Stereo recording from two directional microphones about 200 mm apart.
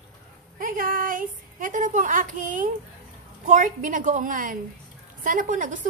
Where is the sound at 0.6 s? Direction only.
45° right (ahead or behind).